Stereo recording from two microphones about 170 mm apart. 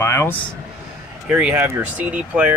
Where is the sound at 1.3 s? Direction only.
5° right (ahead or behind).